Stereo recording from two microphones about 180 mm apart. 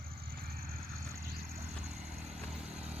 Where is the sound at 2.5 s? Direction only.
5° right (ahead or behind).